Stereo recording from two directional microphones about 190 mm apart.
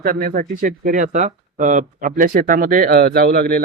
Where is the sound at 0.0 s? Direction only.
50° right (ahead or behind).